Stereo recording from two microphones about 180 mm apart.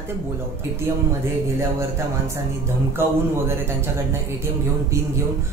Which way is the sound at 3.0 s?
15° right (ahead or behind).